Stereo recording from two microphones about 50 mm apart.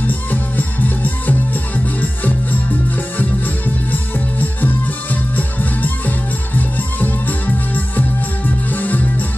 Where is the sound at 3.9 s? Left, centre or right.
Left.